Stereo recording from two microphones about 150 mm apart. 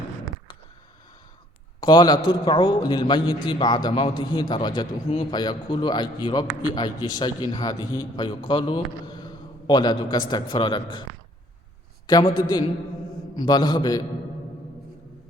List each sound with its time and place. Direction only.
1.8 s a man's voice: 30° left (ahead or behind)
12.0 s a man's voice: 30° left (ahead or behind)